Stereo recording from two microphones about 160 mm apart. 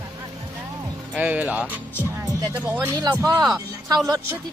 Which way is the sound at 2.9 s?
20° right (ahead or behind).